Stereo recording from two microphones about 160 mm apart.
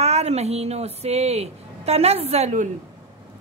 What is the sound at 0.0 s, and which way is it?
A woman's voice, 40° right (ahead or behind).